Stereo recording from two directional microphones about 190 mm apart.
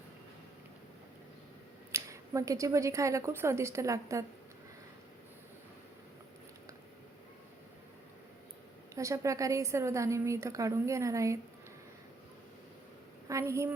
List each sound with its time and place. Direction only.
1.9 s a woman's voice: 15° right (ahead or behind)
9.0 s a woman's voice: 15° right (ahead or behind)
13.2 s a woman's voice: 15° right (ahead or behind)